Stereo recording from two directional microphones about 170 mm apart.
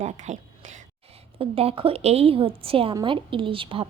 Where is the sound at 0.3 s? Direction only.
45° right (ahead or behind).